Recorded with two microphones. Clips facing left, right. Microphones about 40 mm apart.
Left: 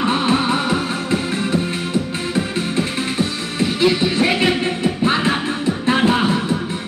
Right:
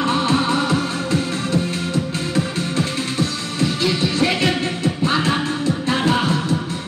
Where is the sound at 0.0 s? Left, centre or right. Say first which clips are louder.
Left 1 dB; left.